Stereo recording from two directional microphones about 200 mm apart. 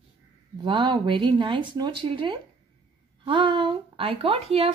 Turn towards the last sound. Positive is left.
turn(degrees=-30)  # may be behind; listen again after turning